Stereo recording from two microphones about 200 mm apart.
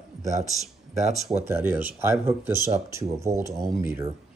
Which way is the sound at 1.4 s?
10° right (ahead or behind).